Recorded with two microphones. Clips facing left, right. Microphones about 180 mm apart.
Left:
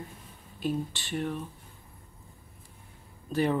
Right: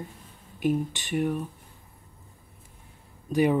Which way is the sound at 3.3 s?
10° right (ahead or behind).